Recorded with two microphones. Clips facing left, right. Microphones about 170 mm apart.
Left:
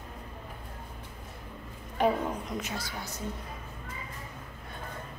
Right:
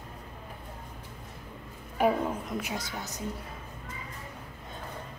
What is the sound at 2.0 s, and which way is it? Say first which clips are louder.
Speech: right 1 dB; 5° right (ahead or behind).